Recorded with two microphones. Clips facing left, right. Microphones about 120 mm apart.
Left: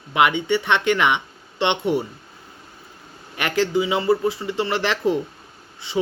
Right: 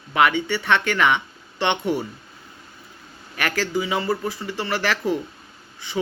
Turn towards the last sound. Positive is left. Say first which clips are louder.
# left 3 dB
turn(degrees=25)  # may be behind; listen again after turning